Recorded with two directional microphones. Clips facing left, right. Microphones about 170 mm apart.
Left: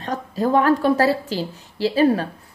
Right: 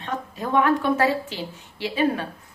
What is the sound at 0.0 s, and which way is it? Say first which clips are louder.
A woman's voice: left 7 dB; 35° left (ahead or behind).